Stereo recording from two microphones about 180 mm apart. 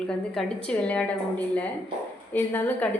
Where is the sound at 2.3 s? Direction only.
10° left (ahead or behind).